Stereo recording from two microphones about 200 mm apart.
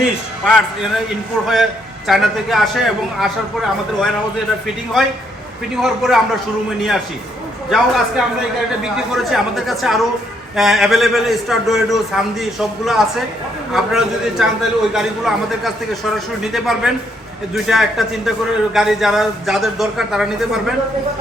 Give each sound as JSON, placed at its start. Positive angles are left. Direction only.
{"t": 0.0, "sound": "a man's voice", "side_deg": 0}
{"t": 2.0, "sound": "a man's voice", "side_deg": 0}
{"t": 5.7, "sound": "a man's voice", "side_deg": 0}
{"t": 7.7, "sound": "a man's voice", "side_deg": 0}